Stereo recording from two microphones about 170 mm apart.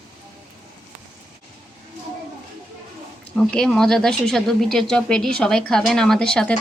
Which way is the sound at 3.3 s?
5° left (ahead or behind).